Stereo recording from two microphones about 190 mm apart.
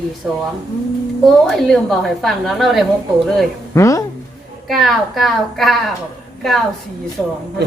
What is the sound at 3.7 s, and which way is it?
Speech, 15° left (ahead or behind).